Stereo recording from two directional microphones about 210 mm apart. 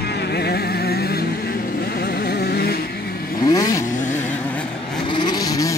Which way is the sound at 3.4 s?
15° left (ahead or behind).